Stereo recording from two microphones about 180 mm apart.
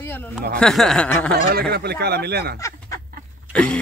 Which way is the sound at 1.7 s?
65° right (ahead or behind).